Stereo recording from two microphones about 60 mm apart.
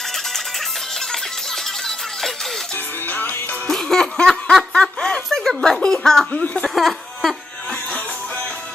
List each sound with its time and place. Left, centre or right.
3.1 s music: left
3.6 s music: centre
5.0 s a sound: centre
6.3 s speech: left
6.6 s speech: centre